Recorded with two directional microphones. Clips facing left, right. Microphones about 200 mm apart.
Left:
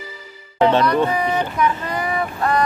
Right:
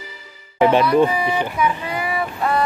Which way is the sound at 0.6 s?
10° right (ahead or behind).